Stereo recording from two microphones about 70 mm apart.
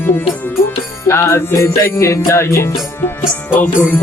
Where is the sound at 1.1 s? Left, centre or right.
Left.